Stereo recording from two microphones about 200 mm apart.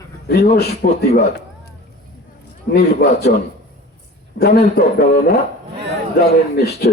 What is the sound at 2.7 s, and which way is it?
Speech, 55° left (ahead or behind).